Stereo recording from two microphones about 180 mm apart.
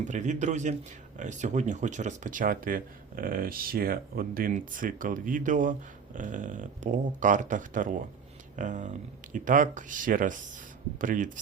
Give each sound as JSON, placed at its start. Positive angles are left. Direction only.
{"t": 0.0, "sound": "a man's voice", "side_deg": -45}